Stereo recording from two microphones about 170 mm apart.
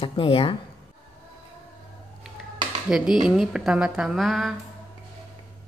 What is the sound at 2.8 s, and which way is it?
A woman's voice, 5° right (ahead or behind).